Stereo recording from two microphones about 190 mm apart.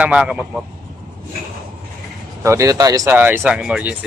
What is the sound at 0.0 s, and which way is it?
Speech, 5° right (ahead or behind).